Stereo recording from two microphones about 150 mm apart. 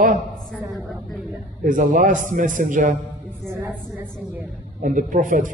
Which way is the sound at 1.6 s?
60° right (ahead or behind).